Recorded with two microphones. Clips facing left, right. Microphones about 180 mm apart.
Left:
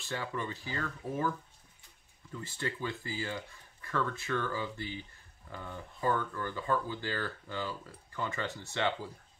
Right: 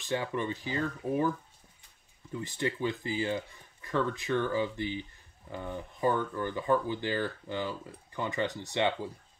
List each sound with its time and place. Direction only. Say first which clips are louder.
0.0 s speech: right 5 dB; 20° right (ahead or behind)
2.3 s speech: right 5 dB; 15° right (ahead or behind)